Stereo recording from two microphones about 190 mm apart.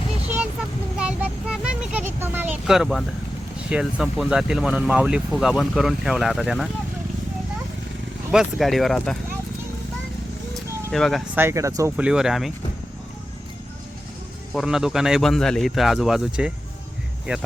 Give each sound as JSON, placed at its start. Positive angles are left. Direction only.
{"t": 0.9, "sound": "vehicle", "side_deg": -5}
{"t": 3.7, "sound": "speech", "side_deg": -5}
{"t": 8.3, "sound": "speech", "side_deg": 0}
{"t": 10.5, "sound": "vehicle", "side_deg": 0}
{"t": 11.3, "sound": "speech", "side_deg": -15}
{"t": 12.0, "sound": "speech", "side_deg": -5}
{"t": 14.5, "sound": "speech", "side_deg": 0}